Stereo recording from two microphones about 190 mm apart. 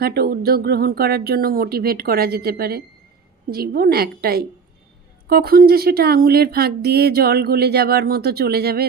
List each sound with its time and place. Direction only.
0.0 s speech: 55° right (ahead or behind)